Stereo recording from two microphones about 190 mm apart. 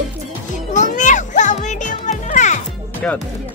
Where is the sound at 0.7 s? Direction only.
40° left (ahead or behind).